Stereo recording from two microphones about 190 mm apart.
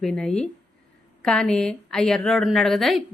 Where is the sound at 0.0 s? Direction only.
Centre (ahead or behind).